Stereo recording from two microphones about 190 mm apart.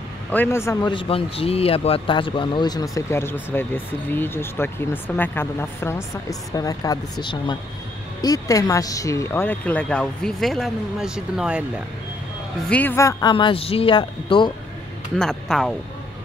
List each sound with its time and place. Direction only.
0.3 s speech: 10° left (ahead or behind)
0.9 s speech: 30° left (ahead or behind); by 11.6 s 5° right (ahead or behind)
12.6 s speech: 10° left (ahead or behind); by 14.5 s 25° left (ahead or behind)
15.1 s speech: 5° left (ahead or behind)